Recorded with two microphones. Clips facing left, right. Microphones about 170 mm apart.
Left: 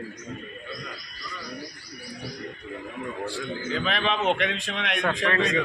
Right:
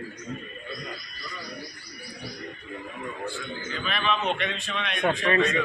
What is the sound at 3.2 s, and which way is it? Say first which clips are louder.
A man's voice: left 4 dB; 90° left.